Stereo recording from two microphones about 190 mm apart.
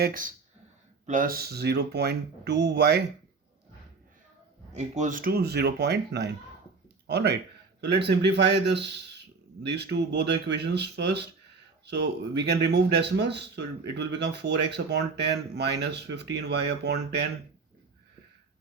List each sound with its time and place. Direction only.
0.0 s speech: 45° right (ahead or behind); by 3.0 s 60° right (ahead or behind)
4.7 s speech: 40° right (ahead or behind); by 17.2 s 60° right (ahead or behind)